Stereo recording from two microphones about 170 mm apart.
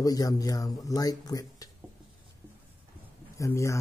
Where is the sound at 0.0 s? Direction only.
20° left (ahead or behind).